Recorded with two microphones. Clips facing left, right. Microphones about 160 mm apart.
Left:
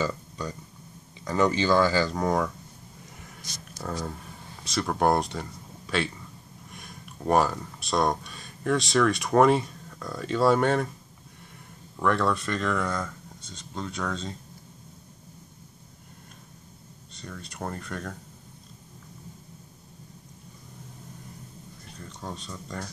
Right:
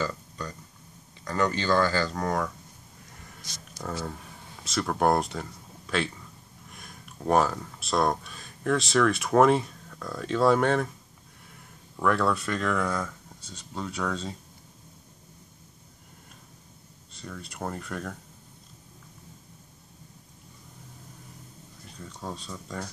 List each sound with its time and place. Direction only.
1.2 s speech: 20° left (ahead or behind)
4.6 s speech: centre (ahead or behind)
12.0 s speech: 5° right (ahead or behind)
17.1 s speech: 5° right (ahead or behind)
22.0 s speech: 5° right (ahead or behind)